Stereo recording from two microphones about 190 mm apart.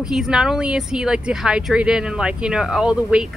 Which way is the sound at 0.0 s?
5° right (ahead or behind).